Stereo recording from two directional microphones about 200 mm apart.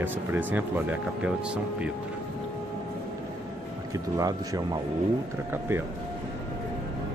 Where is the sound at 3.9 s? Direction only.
15° right (ahead or behind).